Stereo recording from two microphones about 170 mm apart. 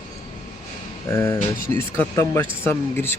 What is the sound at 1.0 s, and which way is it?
Speech, 15° left (ahead or behind).